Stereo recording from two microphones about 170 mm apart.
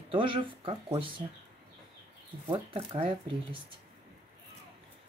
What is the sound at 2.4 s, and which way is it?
Speech, 30° right (ahead or behind).